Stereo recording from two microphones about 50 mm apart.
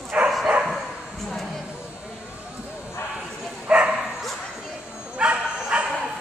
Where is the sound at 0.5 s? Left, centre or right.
Centre.